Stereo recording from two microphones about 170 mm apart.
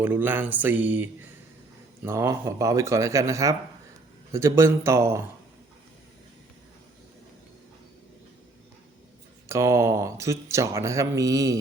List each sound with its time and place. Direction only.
0.0 s speech: 10° right (ahead or behind)
9.5 s speech: 15° right (ahead or behind)